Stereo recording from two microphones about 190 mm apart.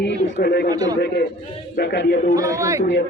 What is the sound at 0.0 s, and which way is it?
Speech, 60° left (ahead or behind).